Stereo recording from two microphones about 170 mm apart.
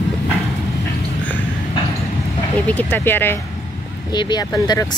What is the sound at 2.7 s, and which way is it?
Speech, 10° left (ahead or behind).